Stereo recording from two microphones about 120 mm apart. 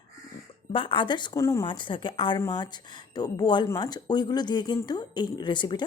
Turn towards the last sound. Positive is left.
turn(degrees=40)  # may be behind; listen again after turning